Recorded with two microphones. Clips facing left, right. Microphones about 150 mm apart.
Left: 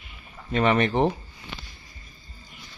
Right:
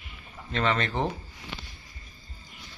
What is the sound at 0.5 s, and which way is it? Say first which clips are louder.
Speech: left 6 dB; 15° left (ahead or behind).